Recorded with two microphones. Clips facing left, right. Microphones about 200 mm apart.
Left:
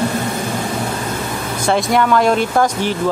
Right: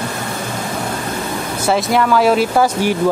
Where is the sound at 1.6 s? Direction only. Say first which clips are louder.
Even; centre (ahead or behind).